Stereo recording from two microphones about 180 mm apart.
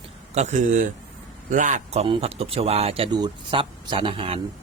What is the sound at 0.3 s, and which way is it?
Speech, 40° right (ahead or behind).